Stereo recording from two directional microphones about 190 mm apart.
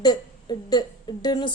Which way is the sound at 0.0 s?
20° left (ahead or behind).